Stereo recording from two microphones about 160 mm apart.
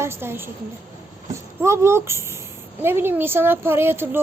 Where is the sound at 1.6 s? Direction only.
15° right (ahead or behind).